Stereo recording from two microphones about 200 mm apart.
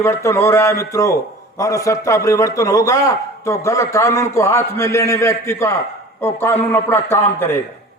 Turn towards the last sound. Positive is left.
turn(degrees=10)  # may be behind; listen again after turning